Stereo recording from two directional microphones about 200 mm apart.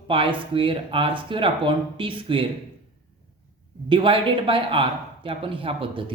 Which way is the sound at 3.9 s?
25° right (ahead or behind).